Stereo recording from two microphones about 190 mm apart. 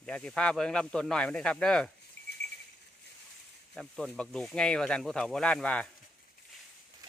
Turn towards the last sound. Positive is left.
turn(degrees=5)  # may be behind; listen again after turning